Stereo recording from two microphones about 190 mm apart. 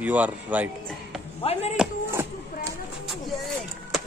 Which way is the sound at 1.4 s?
35° left (ahead or behind).